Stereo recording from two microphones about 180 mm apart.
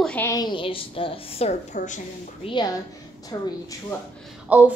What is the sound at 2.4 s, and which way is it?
A woman's voice, 25° left (ahead or behind).